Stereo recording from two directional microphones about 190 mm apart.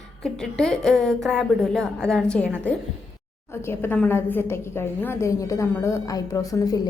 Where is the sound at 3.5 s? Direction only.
10° left (ahead or behind).